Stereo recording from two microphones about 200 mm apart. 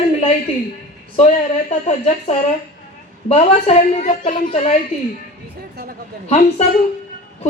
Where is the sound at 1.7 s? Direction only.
35° left (ahead or behind).